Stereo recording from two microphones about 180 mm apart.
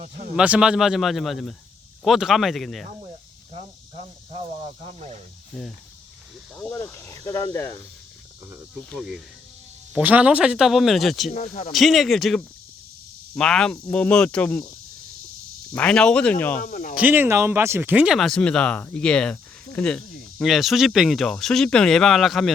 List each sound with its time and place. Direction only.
0.0 s speech: 50° right (ahead or behind)
0.3 s speech: 5° right (ahead or behind)
3.5 s speech: 35° right (ahead or behind)
5.5 s speech: centre (ahead or behind)
6.6 s speech: 10° left (ahead or behind)
8.9 s speech: centre (ahead or behind)
11.3 s speech: 45° left (ahead or behind)
11.7 s speech: centre (ahead or behind)
15.7 s speech: 5° left (ahead or behind)
16.6 s speech: 50° left (ahead or behind)
16.9 s speech: 10° right (ahead or behind)